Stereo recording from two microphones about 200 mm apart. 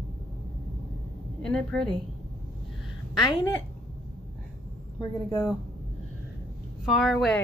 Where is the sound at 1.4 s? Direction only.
5° left (ahead or behind).